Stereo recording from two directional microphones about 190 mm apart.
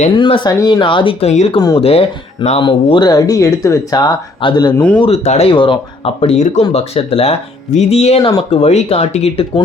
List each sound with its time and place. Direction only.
0.1 s speech: 25° left (ahead or behind)
1.5 s speech: 20° left (ahead or behind)
1.8 s speech: 30° left (ahead or behind)